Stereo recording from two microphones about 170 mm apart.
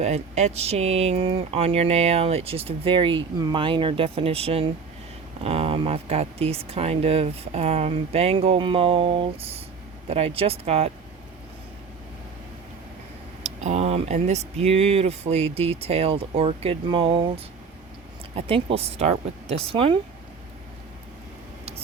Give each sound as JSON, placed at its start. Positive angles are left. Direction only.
{"t": 0.0, "sound": "speech", "side_deg": -40}
{"t": 13.4, "sound": "speech", "side_deg": -45}